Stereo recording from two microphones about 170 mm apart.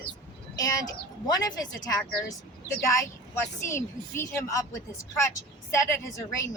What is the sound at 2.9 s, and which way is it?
A woman's voice, 15° left (ahead or behind).